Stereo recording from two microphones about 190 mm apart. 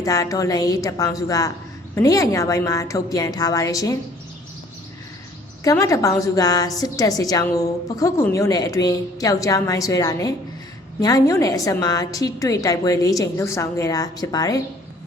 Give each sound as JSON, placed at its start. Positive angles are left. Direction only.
{"t": 0.0, "sound": "a woman's voice", "side_deg": 15}
{"t": 5.7, "sound": "a woman's voice", "side_deg": 15}